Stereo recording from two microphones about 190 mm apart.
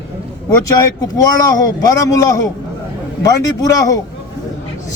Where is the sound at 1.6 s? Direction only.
20° left (ahead or behind).